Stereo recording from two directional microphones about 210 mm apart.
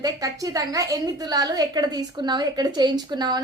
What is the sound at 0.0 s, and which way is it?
A woman's voice, 15° right (ahead or behind).